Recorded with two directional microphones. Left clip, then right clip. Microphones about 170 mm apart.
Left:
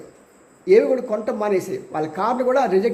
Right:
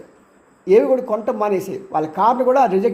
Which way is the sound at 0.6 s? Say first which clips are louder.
Right 1 dB; 15° right (ahead or behind).